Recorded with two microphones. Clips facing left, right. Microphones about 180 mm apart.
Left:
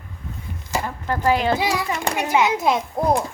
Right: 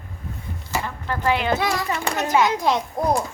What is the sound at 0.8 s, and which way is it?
Speech, 40° left (ahead or behind).